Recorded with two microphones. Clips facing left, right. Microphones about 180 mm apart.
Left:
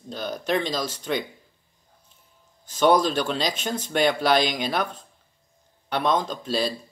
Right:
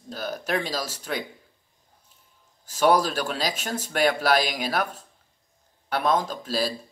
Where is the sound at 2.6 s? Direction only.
5° right (ahead or behind).